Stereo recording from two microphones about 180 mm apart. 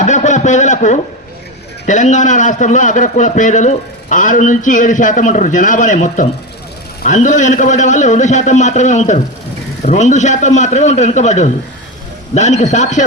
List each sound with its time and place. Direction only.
0.0 s a man's voice: 40° left (ahead or behind)